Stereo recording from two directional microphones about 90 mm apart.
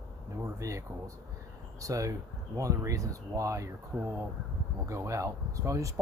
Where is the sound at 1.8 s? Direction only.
40° right (ahead or behind).